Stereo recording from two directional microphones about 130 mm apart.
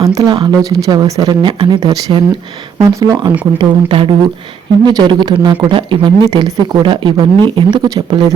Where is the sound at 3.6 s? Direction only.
45° right (ahead or behind).